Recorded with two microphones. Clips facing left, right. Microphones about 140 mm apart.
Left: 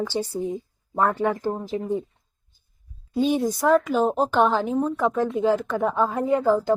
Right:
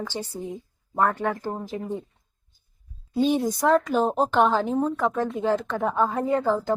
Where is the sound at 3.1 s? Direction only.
Centre (ahead or behind).